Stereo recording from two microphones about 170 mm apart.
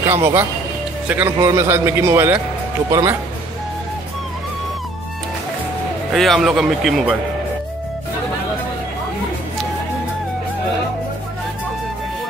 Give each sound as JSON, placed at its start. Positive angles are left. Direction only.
{"t": 0.1, "sound": "speech", "side_deg": -15}
{"t": 6.1, "sound": "speech", "side_deg": 0}